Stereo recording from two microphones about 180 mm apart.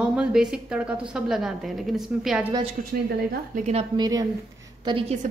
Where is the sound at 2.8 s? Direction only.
45° right (ahead or behind).